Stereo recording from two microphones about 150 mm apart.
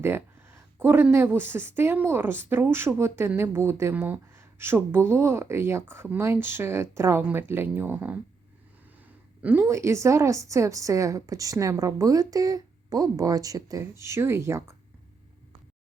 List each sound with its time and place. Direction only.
0.0 s speech: 15° right (ahead or behind)
9.4 s a woman's voice: 15° right (ahead or behind)